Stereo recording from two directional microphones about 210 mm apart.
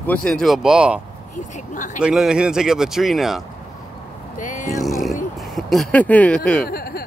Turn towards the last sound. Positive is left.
turn(degrees=45)  # may be behind; listen again after turning